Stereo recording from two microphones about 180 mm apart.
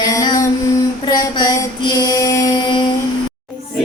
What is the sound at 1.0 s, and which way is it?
Female singing, 20° left (ahead or behind).